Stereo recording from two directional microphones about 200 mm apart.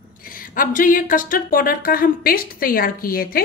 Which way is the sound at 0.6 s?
40° left (ahead or behind).